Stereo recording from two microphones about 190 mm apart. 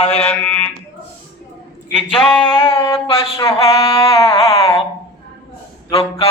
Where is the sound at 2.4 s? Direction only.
30° left (ahead or behind).